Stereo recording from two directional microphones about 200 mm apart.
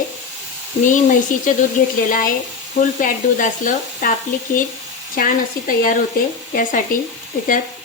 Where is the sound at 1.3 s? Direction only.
40° left (ahead or behind).